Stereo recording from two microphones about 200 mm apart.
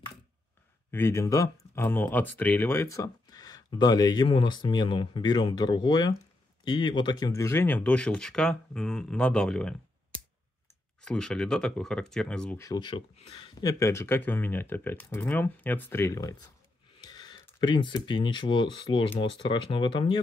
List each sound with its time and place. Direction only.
0.9 s speech: 15° left (ahead or behind)
11.0 s speech: 5° left (ahead or behind); by 13.5 s 30° left (ahead or behind)
13.6 s speech: 15° left (ahead or behind)